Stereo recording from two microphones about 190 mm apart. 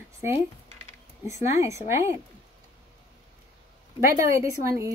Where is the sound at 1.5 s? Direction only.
15° right (ahead or behind).